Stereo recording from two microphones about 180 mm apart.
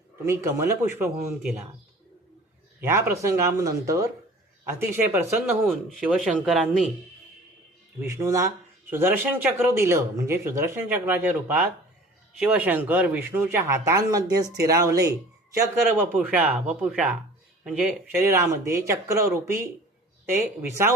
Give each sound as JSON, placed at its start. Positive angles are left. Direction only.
{"t": 0.3, "sound": "speech", "side_deg": -15}
{"t": 2.8, "sound": "speech", "side_deg": -15}
{"t": 8.0, "sound": "speech", "side_deg": -15}
{"t": 18.1, "sound": "speech", "side_deg": -15}